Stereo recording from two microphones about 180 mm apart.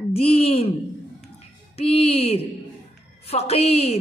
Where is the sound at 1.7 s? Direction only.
35° left (ahead or behind).